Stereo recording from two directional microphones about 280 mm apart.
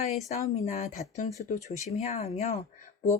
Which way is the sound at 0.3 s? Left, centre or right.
Left.